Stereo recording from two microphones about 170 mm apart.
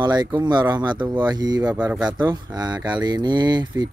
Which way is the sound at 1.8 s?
10° right (ahead or behind).